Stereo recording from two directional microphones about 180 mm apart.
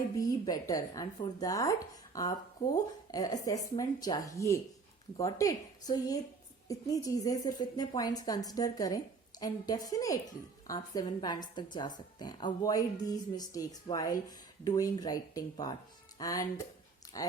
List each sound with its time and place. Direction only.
0.2 s a woman's voice: 20° left (ahead or behind)